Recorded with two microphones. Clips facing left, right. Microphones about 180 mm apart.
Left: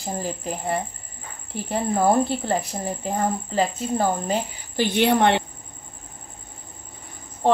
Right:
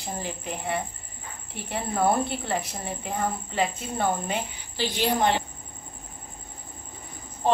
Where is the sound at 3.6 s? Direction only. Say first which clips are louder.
Left 4 dB; 35° left (ahead or behind).